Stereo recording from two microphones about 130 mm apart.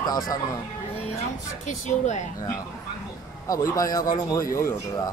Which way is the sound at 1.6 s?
65° left (ahead or behind).